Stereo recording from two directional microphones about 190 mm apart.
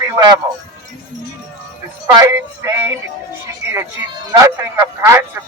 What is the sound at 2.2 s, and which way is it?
Speech, 15° right (ahead or behind).